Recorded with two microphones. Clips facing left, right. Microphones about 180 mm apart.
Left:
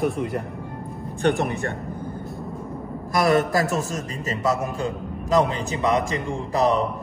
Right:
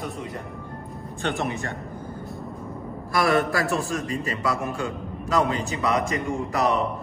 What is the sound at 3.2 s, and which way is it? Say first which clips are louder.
A man's voice: left 3 dB; 40° left (ahead or behind).